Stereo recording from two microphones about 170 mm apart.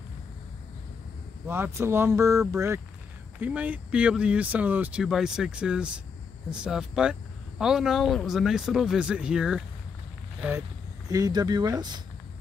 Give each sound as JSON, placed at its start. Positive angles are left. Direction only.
{"t": 1.5, "sound": "speech", "side_deg": -15}
{"t": 11.1, "sound": "speech", "side_deg": -20}